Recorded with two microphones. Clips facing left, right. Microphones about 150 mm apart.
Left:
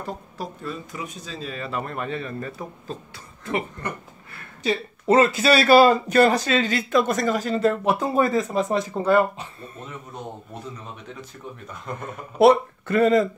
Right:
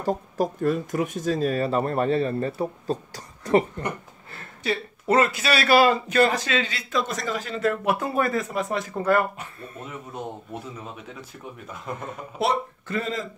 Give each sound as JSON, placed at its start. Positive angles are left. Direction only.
{"t": 0.0, "sound": "speech", "side_deg": -45}
{"t": 4.6, "sound": "a man's voice", "side_deg": 25}
{"t": 8.2, "sound": "speech", "side_deg": 25}
{"t": 11.4, "sound": "speech", "side_deg": -10}
{"t": 12.4, "sound": "speech", "side_deg": 60}